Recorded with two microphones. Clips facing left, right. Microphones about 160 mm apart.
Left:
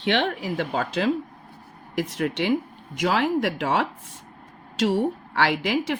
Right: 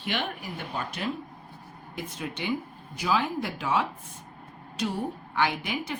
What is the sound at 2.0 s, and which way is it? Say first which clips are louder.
A woman's voice: left 10 dB; 70° left (ahead or behind).